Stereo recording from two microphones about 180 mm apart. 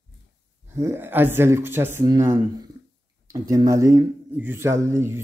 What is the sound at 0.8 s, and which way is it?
Speech, 15° right (ahead or behind).